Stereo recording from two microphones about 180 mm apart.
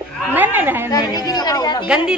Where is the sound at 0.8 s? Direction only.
20° left (ahead or behind).